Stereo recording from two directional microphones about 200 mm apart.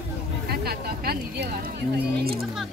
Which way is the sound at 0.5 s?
50° right (ahead or behind).